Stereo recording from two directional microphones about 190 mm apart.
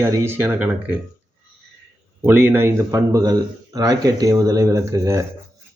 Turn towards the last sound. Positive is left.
turn(degrees=-15)  # may be behind; listen again after turning